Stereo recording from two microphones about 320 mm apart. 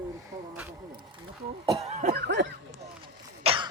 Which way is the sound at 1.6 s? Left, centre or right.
Centre.